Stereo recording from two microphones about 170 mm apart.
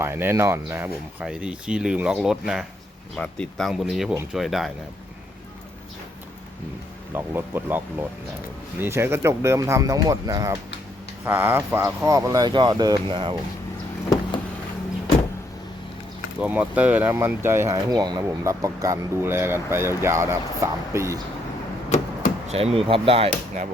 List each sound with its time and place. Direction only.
0.0 s speech: 15° right (ahead or behind)
7.1 s speech: 15° right (ahead or behind); by 13.3 s 30° right (ahead or behind)
16.4 s speech: 10° right (ahead or behind)
21.8 s a sound: 40° left (ahead or behind)
22.4 s speech: 35° right (ahead or behind)